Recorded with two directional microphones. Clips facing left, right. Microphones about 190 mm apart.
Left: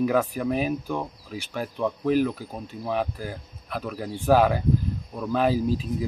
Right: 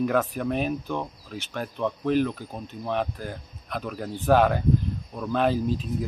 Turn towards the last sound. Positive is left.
turn(degrees=5)  # may be behind; listen again after turning